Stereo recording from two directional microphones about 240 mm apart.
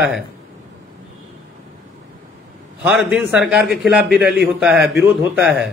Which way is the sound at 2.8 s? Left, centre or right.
Centre.